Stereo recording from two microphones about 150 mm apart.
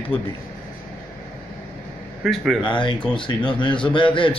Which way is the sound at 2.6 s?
30° left (ahead or behind).